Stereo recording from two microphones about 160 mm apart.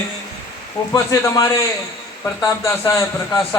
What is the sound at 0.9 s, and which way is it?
A man's voice, 20° left (ahead or behind).